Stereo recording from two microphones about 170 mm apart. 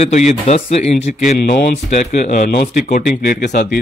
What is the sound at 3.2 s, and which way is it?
Speech, 60° left (ahead or behind).